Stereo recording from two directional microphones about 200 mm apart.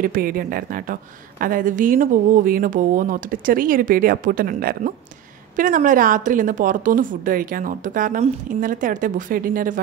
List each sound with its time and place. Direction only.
0.0 s a woman's voice: 45° right (ahead or behind)